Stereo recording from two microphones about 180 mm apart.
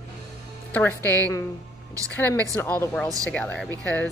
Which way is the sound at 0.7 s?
10° left (ahead or behind).